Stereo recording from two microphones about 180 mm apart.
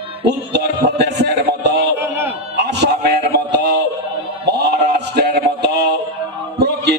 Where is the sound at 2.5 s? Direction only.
65° right (ahead or behind).